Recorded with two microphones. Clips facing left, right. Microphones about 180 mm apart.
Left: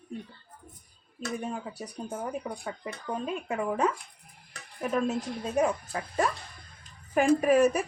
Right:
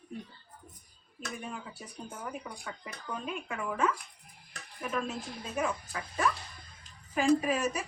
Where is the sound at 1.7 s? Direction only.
40° left (ahead or behind).